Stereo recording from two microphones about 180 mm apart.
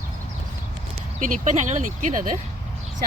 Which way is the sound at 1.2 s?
45° right (ahead or behind).